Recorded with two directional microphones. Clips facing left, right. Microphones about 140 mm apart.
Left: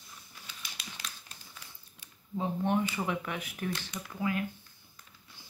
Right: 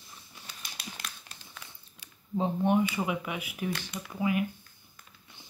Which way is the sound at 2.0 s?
90° right.